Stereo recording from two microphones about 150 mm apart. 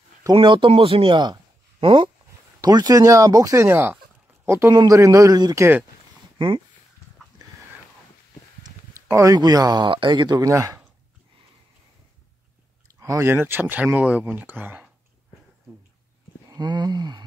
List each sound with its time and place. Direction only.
0.2 s speech: 30° right (ahead or behind); by 5.9 s 15° right (ahead or behind)
6.3 s speech: 35° right (ahead or behind)
9.1 s speech: 20° right (ahead or behind)
13.0 s speech: 20° right (ahead or behind)
16.4 s a sound: 30° right (ahead or behind)